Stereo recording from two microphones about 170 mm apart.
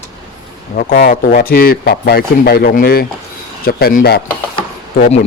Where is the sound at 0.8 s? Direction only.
60° left (ahead or behind).